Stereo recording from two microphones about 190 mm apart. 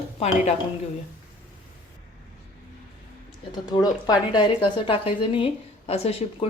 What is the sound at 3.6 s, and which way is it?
A woman's voice, 20° left (ahead or behind).